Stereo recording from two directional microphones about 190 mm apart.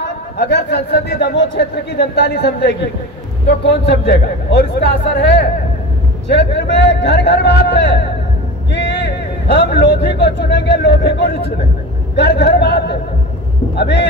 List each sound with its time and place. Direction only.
0.0 s a man's voice: 60° left (ahead or behind)